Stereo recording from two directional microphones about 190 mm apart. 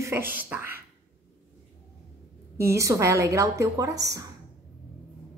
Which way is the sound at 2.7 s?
15° right (ahead or behind).